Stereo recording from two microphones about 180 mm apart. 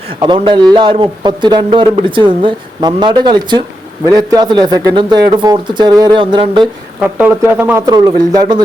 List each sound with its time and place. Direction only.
0.2 s speech: 25° right (ahead or behind)
7.2 s speech: 10° right (ahead or behind)